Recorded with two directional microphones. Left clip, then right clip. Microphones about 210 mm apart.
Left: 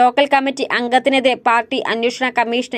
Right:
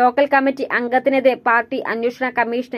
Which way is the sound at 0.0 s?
30° left (ahead or behind).